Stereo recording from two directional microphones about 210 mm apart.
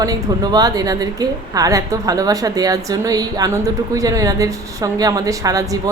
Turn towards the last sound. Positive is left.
turn(degrees=-15)  # may be behind; listen again after turning